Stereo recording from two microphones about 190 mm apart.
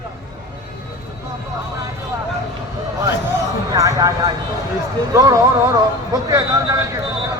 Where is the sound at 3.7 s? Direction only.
20° right (ahead or behind).